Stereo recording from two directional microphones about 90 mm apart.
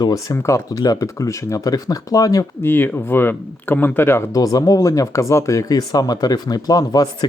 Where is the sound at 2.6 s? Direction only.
25° left (ahead or behind).